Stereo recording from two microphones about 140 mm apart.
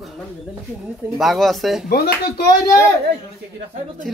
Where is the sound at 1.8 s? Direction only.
90° left.